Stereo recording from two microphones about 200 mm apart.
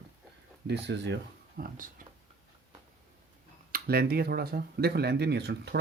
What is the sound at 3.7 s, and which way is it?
Speech, 50° right (ahead or behind).